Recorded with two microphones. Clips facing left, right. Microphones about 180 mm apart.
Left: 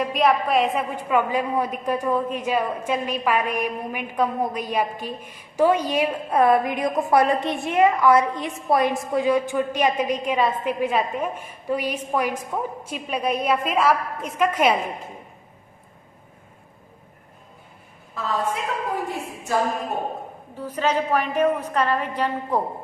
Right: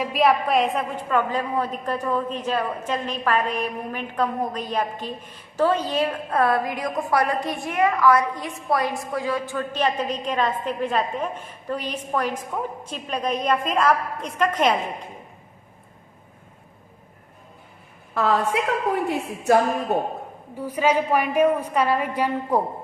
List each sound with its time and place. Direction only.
0.0 s a woman's voice: centre (ahead or behind)
18.1 s a woman's voice: 75° right (ahead or behind)
20.6 s a woman's voice: 10° right (ahead or behind)